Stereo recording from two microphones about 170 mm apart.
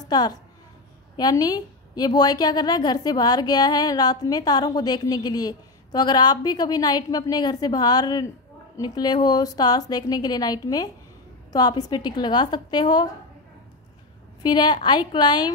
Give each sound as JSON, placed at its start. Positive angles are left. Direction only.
{"t": 0.1, "sound": "a woman's voice", "side_deg": 25}
{"t": 14.4, "sound": "a woman's voice", "side_deg": 25}